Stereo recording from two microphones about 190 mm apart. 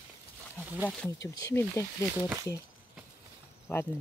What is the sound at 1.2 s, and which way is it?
Speech, 15° left (ahead or behind).